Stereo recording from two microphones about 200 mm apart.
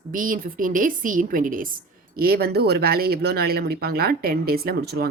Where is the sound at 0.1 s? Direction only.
45° right (ahead or behind).